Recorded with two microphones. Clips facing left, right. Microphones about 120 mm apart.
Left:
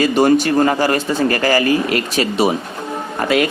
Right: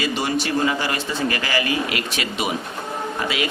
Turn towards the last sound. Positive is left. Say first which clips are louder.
# left 8 dB
turn(degrees=50)  # may be behind; listen again after turning